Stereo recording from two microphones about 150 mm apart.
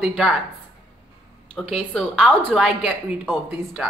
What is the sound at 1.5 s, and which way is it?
Speech, centre (ahead or behind).